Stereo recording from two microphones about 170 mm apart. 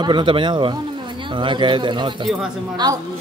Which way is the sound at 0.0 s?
30° right (ahead or behind).